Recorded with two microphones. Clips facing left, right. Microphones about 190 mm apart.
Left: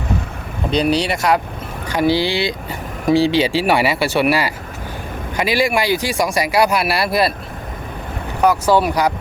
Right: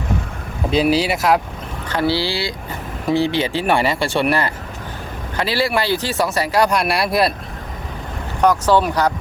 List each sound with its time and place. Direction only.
0.7 s speech: 5° right (ahead or behind)
1.9 s speech: 15° left (ahead or behind)
8.4 s speech: 10° left (ahead or behind)